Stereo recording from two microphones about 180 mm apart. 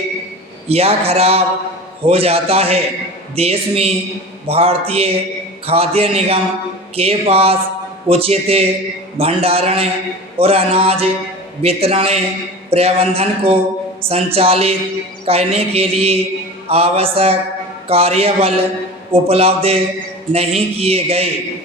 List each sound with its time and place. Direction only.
0.7 s a man's voice: 35° right (ahead or behind)